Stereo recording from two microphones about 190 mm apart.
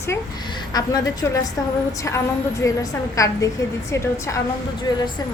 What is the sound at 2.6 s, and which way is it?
A woman's voice, 15° left (ahead or behind).